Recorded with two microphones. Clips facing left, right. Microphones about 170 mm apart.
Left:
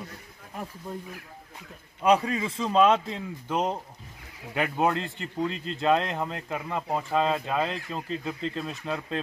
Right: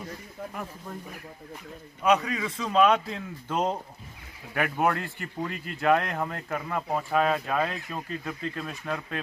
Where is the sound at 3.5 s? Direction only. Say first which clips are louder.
Even; 10° left (ahead or behind).